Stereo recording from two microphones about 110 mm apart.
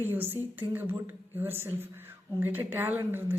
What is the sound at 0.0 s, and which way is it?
A woman's voice, 20° right (ahead or behind).